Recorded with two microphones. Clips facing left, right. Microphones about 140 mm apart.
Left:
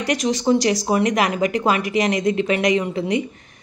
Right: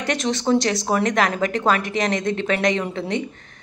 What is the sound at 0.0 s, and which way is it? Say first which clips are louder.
A woman's voice: left 2 dB; 5° left (ahead or behind).